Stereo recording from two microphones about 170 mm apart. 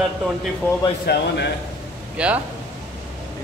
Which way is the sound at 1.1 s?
70° left (ahead or behind).